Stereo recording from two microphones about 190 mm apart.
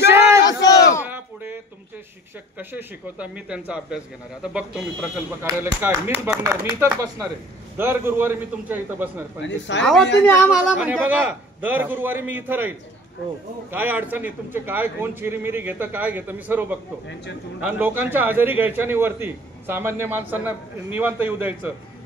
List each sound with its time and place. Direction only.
0.0 s battle cry: 15° right (ahead or behind)
0.4 s battle cry: 20° left (ahead or behind)
1.0 s a sound: 10° right (ahead or behind)
2.7 s a man's voice: 5° right (ahead or behind)
9.4 s speech: 70° left (ahead or behind)
10.5 s a man's voice: 5° right (ahead or behind)